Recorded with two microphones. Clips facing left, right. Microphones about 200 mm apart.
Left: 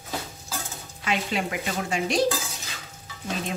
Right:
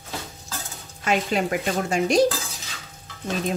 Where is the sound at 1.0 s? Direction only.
45° right (ahead or behind).